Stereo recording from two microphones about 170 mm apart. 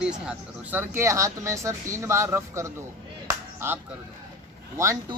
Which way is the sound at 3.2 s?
15° right (ahead or behind).